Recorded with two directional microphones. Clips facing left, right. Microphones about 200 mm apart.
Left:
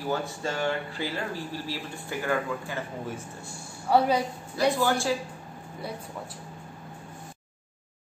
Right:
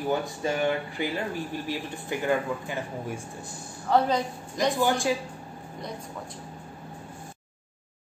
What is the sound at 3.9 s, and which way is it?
Speech, 10° left (ahead or behind).